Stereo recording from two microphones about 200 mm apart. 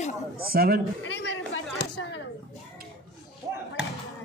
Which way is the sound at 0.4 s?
50° right (ahead or behind).